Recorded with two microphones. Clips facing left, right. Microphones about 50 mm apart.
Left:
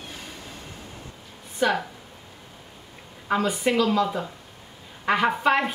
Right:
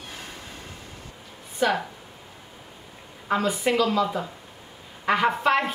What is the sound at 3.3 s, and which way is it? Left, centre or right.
Speech, centre.